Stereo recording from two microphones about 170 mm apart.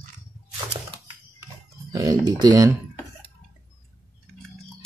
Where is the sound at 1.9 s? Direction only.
20° right (ahead or behind).